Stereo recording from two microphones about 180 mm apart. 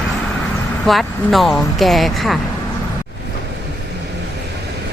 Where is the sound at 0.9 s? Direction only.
Centre (ahead or behind).